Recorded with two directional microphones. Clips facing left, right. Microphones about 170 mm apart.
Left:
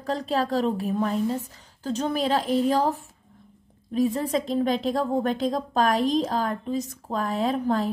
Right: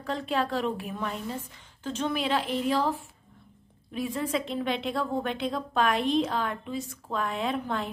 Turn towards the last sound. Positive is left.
turn(degrees=35)  # may be behind; listen again after turning